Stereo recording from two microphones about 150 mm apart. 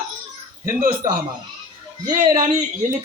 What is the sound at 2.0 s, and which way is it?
Speech, 25° right (ahead or behind).